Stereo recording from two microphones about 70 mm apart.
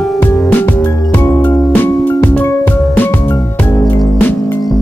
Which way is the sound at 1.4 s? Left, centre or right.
Left.